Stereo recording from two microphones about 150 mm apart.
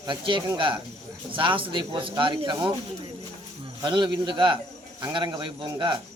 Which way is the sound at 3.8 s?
30° right (ahead or behind).